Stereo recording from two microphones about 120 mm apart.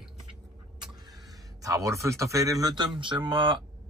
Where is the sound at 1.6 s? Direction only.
25° right (ahead or behind).